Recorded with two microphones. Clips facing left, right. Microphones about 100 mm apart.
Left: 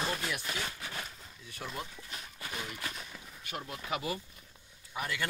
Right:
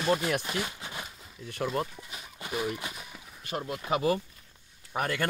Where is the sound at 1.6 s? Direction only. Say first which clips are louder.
Right 11 dB; 70° right (ahead or behind).